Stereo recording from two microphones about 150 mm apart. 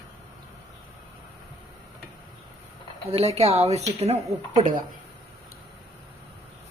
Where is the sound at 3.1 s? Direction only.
45° right (ahead or behind).